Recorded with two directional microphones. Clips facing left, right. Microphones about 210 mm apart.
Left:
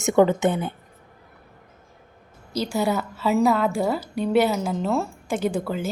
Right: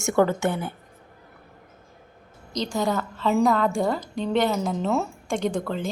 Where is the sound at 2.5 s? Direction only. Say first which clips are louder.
Left 2 dB; 5° left (ahead or behind).